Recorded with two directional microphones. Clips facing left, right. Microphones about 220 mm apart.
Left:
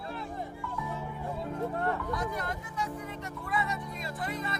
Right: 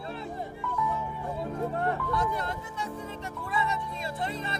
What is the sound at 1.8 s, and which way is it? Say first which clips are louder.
Speech: right 3 dB; 30° right (ahead or behind).